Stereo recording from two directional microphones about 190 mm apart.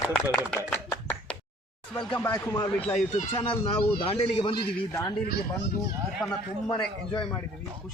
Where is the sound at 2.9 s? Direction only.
35° left (ahead or behind).